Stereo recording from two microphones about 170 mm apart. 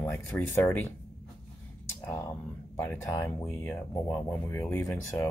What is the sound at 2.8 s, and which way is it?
Speech, 15° left (ahead or behind).